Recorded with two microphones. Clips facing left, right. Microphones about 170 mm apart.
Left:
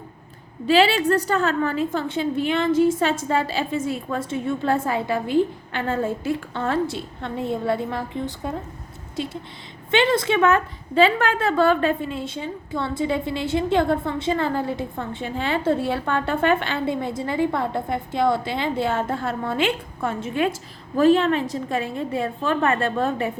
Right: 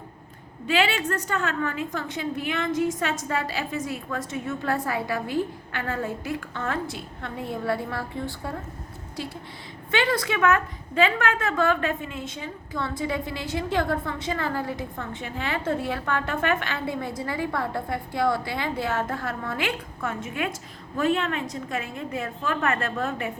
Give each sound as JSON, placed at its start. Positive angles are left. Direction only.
{"t": 0.7, "sound": "a woman's voice", "side_deg": 30}